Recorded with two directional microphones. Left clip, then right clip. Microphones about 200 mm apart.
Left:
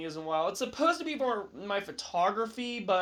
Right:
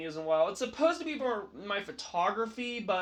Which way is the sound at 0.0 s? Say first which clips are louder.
Right 2 dB; 25° left (ahead or behind).